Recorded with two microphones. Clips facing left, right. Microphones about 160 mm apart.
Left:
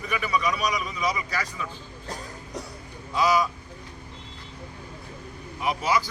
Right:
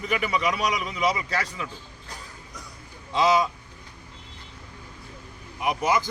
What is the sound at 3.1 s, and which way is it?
Speech, 25° right (ahead or behind).